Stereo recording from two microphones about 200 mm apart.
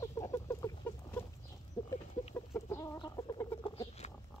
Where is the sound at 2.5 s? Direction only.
15° left (ahead or behind).